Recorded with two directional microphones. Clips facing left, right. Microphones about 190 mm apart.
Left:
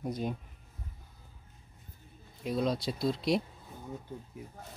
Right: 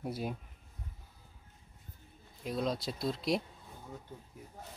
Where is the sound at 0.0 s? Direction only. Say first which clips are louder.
Left 3 dB; 5° right (ahead or behind).